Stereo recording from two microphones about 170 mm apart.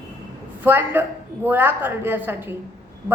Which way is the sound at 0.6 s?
10° right (ahead or behind).